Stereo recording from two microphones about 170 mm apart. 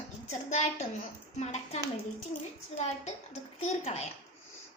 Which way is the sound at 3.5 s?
40° left (ahead or behind).